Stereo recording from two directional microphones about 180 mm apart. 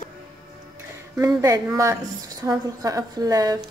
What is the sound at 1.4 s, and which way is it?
A woman's voice, 20° right (ahead or behind).